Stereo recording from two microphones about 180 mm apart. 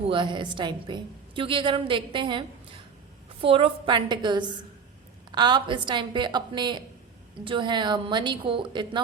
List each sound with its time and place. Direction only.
0.1 s a woman's voice: 25° right (ahead or behind)
3.4 s a woman's voice: 30° right (ahead or behind)